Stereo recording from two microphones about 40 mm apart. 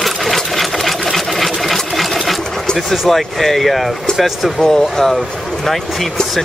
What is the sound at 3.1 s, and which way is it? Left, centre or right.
Speech, centre.